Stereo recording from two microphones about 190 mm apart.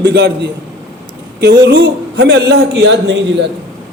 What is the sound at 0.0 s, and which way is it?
A man's voice, 65° right (ahead or behind).